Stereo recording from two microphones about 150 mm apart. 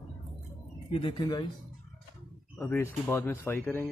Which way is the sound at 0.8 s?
30° left (ahead or behind).